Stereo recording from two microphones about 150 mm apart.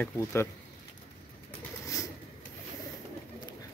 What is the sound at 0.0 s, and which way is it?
Speech, 15° left (ahead or behind).